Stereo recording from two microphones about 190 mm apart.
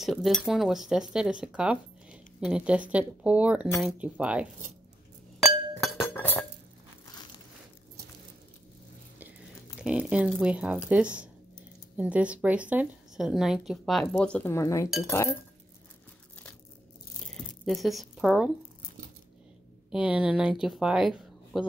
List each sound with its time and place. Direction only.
0.0 s a woman's voice: centre (ahead or behind)
5.9 s chink: 10° left (ahead or behind)
9.8 s a woman's voice: 5° right (ahead or behind); by 15.3 s 15° left (ahead or behind)
17.3 s squish: centre (ahead or behind)
19.9 s speech: 5° right (ahead or behind)